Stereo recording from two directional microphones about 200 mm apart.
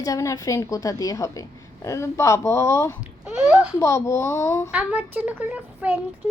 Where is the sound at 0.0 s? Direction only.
15° left (ahead or behind).